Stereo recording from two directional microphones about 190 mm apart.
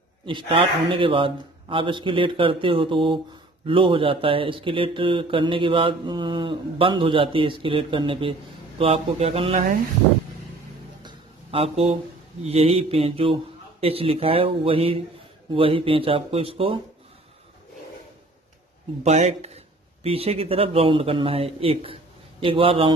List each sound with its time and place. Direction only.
0.2 s speech: 25° right (ahead or behind)
11.0 s a sound: 25° right (ahead or behind)
12.4 s a man's voice: 30° right (ahead or behind)
19.0 s a man's voice: 35° right (ahead or behind)